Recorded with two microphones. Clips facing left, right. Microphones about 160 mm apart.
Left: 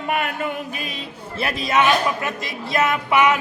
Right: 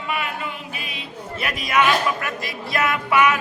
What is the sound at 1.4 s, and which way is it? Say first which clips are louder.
A man's voice: left 1 dB; 25° left (ahead or behind).